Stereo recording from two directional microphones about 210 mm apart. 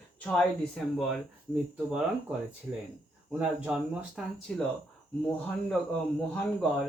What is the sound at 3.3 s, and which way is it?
Speech, 5° right (ahead or behind).